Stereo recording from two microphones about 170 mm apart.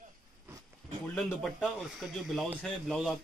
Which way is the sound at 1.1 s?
5° left (ahead or behind).